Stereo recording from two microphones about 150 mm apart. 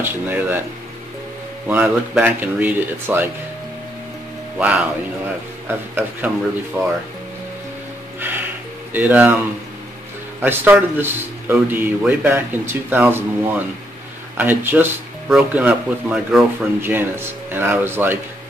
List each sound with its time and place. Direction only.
0.0 s speech: 15° right (ahead or behind)
1.7 s speech: 10° right (ahead or behind)
4.6 s speech: 10° right (ahead or behind)
8.2 s music: 15° right (ahead or behind)
8.9 s speech: 10° right (ahead or behind)
10.4 s speech: 10° right (ahead or behind)
14.3 s speech: 15° right (ahead or behind)